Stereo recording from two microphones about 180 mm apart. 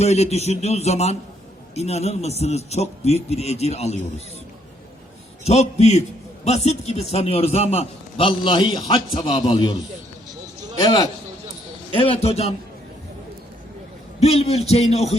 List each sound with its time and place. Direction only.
0.0 s a man's voice: 35° left (ahead or behind)
5.5 s a man's voice: 35° left (ahead or behind)
10.8 s a man's voice: 20° left (ahead or behind)
11.9 s a man's voice: 35° left (ahead or behind)
14.2 s a man's voice: 35° left (ahead or behind)